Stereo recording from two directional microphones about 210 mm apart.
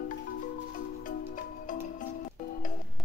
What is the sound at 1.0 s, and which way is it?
Music, 40° left (ahead or behind).